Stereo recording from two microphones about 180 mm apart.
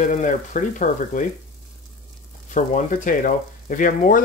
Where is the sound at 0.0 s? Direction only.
45° left (ahead or behind).